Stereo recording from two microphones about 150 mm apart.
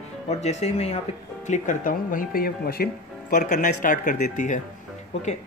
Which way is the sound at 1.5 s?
60° left (ahead or behind).